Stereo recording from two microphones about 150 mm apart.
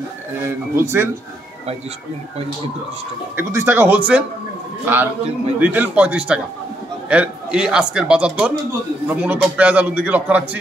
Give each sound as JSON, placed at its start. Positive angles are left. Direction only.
{"t": 0.5, "sound": "a man's voice", "side_deg": -20}
{"t": 3.3, "sound": "a man's voice", "side_deg": -15}